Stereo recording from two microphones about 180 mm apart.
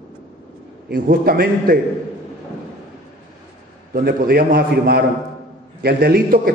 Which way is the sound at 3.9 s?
55° right (ahead or behind).